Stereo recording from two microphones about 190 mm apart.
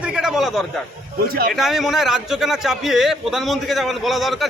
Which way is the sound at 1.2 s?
55° right (ahead or behind).